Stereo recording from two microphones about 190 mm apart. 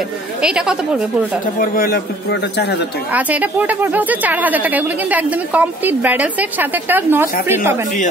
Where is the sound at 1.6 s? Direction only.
50° left (ahead or behind).